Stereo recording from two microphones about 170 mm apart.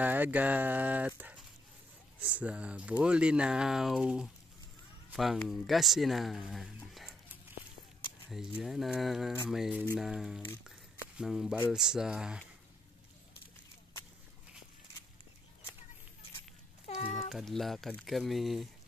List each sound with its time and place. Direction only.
0.0 s speech: 10° right (ahead or behind)
8.3 s speech: centre (ahead or behind)
17.0 s speech: 35° left (ahead or behind)
17.3 s speech: centre (ahead or behind)